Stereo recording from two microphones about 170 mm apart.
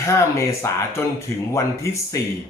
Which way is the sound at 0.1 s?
15° left (ahead or behind).